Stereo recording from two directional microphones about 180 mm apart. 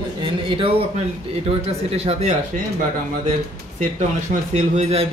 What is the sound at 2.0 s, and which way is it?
Speech, 35° right (ahead or behind).